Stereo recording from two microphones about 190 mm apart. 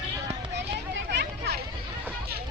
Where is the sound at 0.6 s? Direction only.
65° right (ahead or behind).